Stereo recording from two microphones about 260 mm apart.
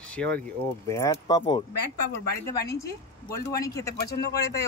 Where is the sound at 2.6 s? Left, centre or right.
Centre.